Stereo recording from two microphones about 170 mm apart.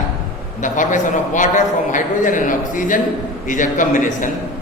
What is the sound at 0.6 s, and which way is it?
A man's voice, 50° left (ahead or behind).